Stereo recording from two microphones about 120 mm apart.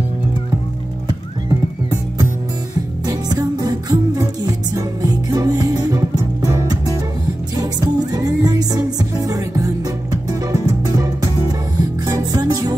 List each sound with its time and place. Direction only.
3.1 s music: 35° right (ahead or behind)